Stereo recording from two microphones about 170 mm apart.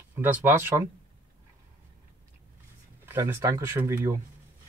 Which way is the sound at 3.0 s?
15° right (ahead or behind).